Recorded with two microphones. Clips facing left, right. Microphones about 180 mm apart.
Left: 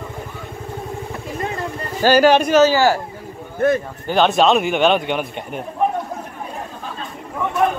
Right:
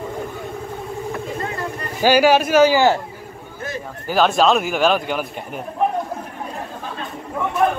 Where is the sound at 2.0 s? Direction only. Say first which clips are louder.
Left 1 dB; 10° right (ahead or behind).